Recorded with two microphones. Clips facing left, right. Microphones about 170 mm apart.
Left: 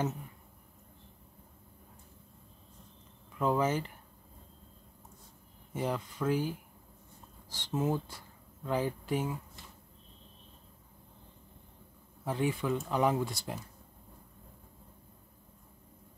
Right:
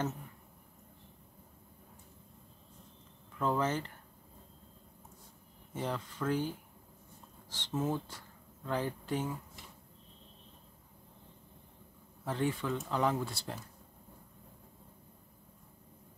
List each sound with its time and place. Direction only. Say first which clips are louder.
3.3 s speech: left 3 dB; 10° left (ahead or behind)
5.7 s speech: left 3 dB; 10° left (ahead or behind)
12.3 s speech: left 2 dB; 10° left (ahead or behind)